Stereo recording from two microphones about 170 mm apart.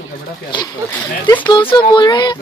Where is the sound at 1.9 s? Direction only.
25° left (ahead or behind).